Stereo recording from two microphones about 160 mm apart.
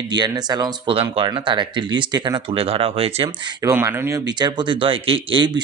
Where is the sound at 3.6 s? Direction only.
15° right (ahead or behind).